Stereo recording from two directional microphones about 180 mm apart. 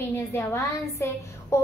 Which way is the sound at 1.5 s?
15° left (ahead or behind).